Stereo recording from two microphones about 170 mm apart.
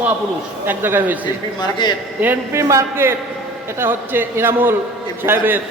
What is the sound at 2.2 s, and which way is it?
A man's voice, 15° right (ahead or behind).